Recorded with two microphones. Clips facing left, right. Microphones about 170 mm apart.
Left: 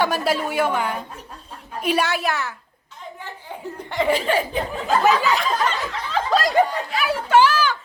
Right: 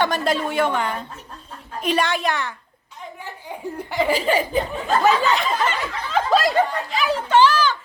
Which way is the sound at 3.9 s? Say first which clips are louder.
Even; centre (ahead or behind).